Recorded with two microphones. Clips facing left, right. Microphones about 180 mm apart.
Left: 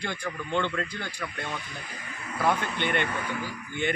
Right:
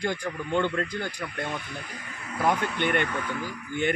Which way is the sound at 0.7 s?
45° right (ahead or behind).